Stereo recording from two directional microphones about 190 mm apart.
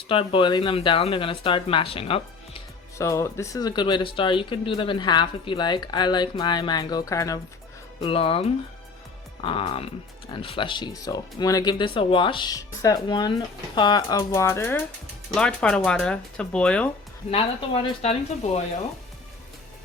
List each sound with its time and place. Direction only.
0.1 s speech: 30° left (ahead or behind)
3.0 s speech: 15° left (ahead or behind)
8.0 s speech: 30° left (ahead or behind); by 16.9 s 5° left (ahead or behind)
17.8 s speech: 35° left (ahead or behind)